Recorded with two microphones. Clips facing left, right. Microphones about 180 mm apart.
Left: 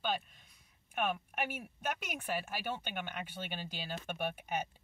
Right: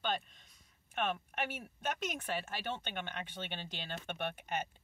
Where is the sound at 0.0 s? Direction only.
5° left (ahead or behind).